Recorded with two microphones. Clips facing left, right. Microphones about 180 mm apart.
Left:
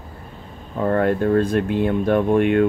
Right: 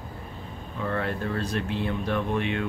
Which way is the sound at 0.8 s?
50° left (ahead or behind).